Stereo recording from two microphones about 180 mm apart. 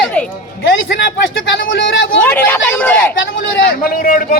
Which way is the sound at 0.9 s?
90° left.